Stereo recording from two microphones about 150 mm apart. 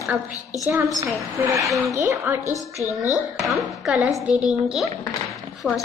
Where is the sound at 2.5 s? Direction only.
20° left (ahead or behind).